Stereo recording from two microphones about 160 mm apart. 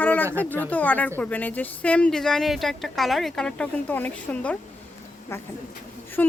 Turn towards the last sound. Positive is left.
turn(degrees=10)  # may be behind; listen again after turning